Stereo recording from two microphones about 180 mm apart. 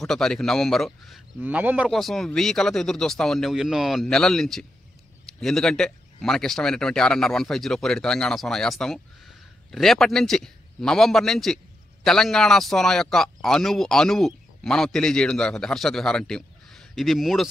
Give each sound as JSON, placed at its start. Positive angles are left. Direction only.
{"t": 0.0, "sound": "a man's voice", "side_deg": 0}